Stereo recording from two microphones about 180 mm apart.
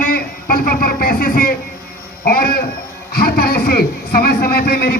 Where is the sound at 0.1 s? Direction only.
55° left (ahead or behind).